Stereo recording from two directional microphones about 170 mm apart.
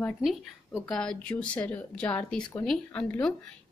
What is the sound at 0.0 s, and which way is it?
Speech, 5° left (ahead or behind).